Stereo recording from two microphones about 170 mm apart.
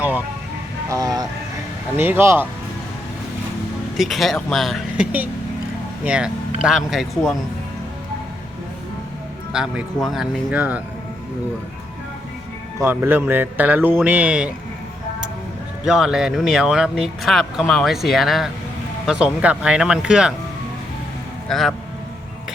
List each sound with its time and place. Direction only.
0.9 s speech: 20° right (ahead or behind)
3.9 s speech: centre (ahead or behind)
9.5 s speech: 5° right (ahead or behind)
12.8 s speech: 10° right (ahead or behind)
15.8 s speech: 5° right (ahead or behind)
21.5 s speech: centre (ahead or behind)